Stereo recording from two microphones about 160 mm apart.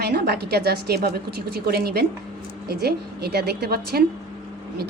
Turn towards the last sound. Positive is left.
turn(degrees=-75)  # may be behind; listen again after turning